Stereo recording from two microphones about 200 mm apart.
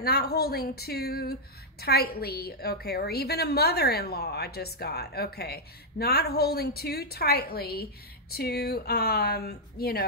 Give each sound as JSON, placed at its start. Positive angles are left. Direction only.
{"t": 0.0, "sound": "a woman's voice", "side_deg": 50}